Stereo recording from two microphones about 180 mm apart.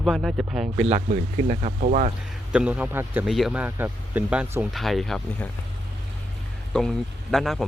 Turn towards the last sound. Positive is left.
turn(degrees=0)  # may be behind; listen again after turning